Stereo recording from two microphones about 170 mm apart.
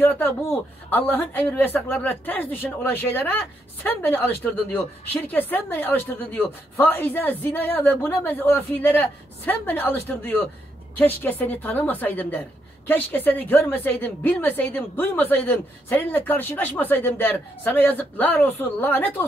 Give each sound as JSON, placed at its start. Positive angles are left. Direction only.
{"t": 0.0, "sound": "speech", "side_deg": 10}